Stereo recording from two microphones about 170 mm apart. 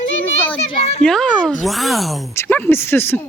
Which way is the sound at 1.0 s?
5° left (ahead or behind).